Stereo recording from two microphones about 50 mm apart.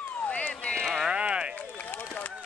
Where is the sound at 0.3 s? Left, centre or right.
Left.